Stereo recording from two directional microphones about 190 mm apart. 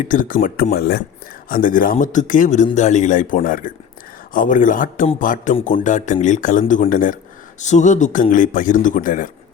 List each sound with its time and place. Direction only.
0.0 s speech: 45° left (ahead or behind)
1.5 s speech: 45° left (ahead or behind)